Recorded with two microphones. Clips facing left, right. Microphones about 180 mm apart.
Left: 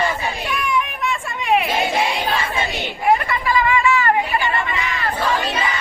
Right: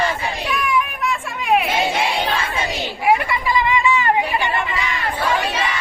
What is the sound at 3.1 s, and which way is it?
Chatter, 15° right (ahead or behind).